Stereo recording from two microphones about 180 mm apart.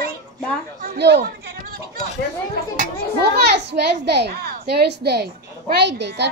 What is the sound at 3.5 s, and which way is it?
A child's voice, 70° right (ahead or behind).